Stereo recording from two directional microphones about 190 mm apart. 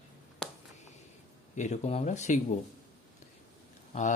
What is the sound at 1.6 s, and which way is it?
Speech, 35° left (ahead or behind).